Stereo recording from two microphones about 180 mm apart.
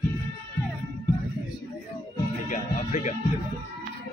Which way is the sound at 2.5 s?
45° left (ahead or behind).